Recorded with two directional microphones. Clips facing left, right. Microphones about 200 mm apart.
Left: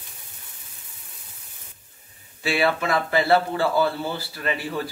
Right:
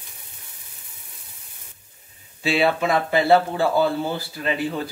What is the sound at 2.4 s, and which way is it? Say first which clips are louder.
Speech: right 2 dB; 20° right (ahead or behind).